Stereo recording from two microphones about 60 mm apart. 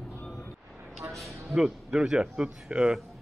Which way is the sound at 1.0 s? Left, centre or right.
Right.